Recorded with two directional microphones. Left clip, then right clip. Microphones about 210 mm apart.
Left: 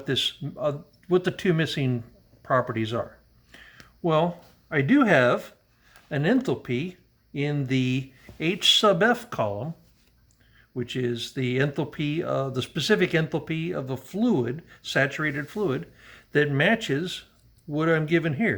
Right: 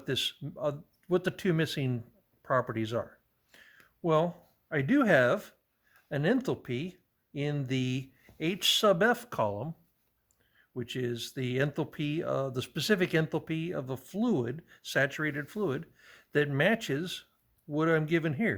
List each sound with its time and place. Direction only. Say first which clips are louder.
0.0 s speech: left 6 dB; 50° right (ahead or behind)
3.5 s a sound: left 8 dB; 50° right (ahead or behind)
4.7 s speech: left 5 dB; 50° right (ahead or behind)
10.8 s speech: left 6 dB; 50° right (ahead or behind)